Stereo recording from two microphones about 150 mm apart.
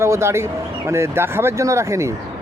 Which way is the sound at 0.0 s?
20° right (ahead or behind).